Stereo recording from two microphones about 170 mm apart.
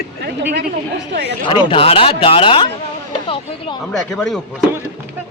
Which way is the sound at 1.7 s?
35° left (ahead or behind).